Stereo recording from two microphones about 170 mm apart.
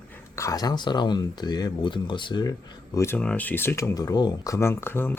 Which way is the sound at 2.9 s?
15° left (ahead or behind).